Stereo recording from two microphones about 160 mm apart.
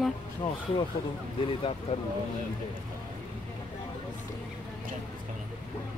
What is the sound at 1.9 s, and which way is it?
Speech, 40° left (ahead or behind).